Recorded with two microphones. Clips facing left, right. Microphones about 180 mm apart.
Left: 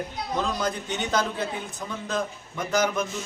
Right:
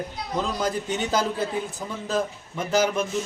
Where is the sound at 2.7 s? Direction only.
25° right (ahead or behind).